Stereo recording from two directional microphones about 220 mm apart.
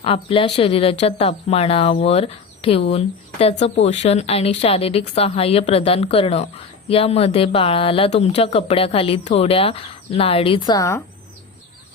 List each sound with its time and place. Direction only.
0.0 s speech: 25° left (ahead or behind)